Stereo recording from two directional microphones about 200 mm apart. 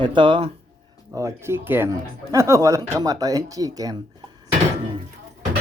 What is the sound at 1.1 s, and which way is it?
Speech, 15° right (ahead or behind).